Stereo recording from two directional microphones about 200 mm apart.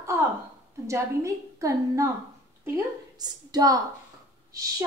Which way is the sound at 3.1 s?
20° right (ahead or behind).